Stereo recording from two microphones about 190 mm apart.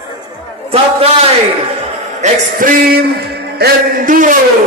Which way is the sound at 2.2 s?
45° right (ahead or behind).